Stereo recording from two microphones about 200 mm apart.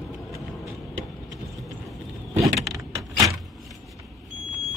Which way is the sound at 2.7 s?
15° right (ahead or behind).